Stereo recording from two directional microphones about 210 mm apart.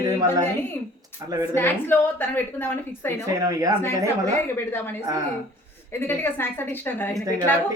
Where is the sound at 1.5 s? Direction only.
10° left (ahead or behind).